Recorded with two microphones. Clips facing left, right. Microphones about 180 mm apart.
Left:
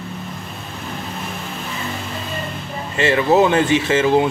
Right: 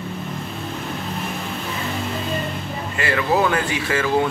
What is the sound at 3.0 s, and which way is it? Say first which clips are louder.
Speech: left 6 dB; 25° left (ahead or behind).